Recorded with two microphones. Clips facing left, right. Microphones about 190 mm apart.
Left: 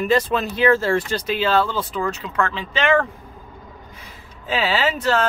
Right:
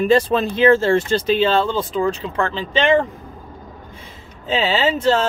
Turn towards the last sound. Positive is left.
turn(degrees=-25)  # may be behind; listen again after turning